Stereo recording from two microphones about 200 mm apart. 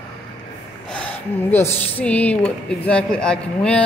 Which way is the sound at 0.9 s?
10° left (ahead or behind).